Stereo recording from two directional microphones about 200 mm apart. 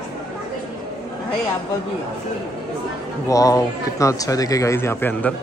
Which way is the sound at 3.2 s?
15° left (ahead or behind).